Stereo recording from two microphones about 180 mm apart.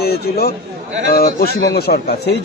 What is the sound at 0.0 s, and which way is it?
A man's voice, 60° left (ahead or behind).